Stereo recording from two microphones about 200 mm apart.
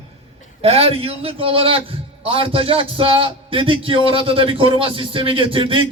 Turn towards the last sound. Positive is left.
turn(degrees=-25)  # may be behind; listen again after turning